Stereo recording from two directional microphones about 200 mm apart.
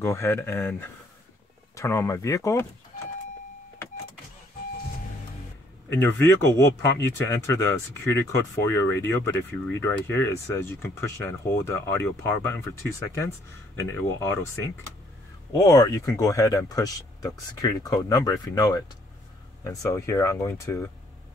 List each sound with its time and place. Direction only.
0.0 s speech: 10° left (ahead or behind)
5.9 s speech: 10° left (ahead or behind)
13.7 s speech: 15° left (ahead or behind)
15.5 s speech: 15° left (ahead or behind)